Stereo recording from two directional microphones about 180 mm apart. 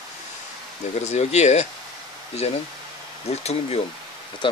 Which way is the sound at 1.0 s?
40° left (ahead or behind).